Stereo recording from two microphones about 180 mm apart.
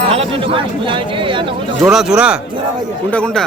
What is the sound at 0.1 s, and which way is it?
Speech, 30° right (ahead or behind).